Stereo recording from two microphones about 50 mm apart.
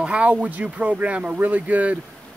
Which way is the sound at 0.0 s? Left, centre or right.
Right.